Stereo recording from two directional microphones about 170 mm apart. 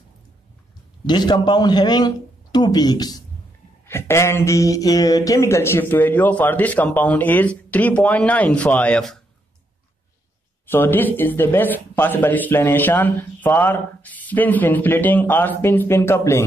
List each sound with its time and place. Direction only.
1.0 s speech: 25° left (ahead or behind); by 9.2 s 5° left (ahead or behind)
10.7 s speech: 10° left (ahead or behind)